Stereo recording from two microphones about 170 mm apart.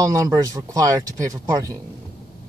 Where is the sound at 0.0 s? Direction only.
20° right (ahead or behind).